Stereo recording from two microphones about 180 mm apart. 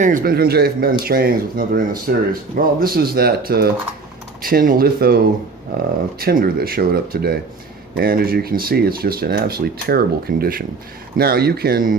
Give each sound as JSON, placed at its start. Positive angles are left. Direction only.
{"t": 0.0, "sound": "speech", "side_deg": -50}